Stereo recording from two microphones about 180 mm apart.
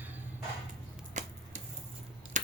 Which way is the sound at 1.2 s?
40° right (ahead or behind).